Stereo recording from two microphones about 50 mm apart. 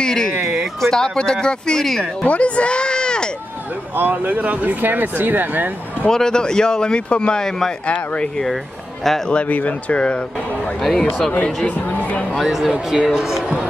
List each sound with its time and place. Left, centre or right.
0.0 s speech: centre
2.2 s speech: left
3.9 s speech: right
6.0 s speech: centre
7.8 s speech: left
9.3 s speech: left
10.8 s speech: centre
11.6 s speech: left
12.4 s speech: centre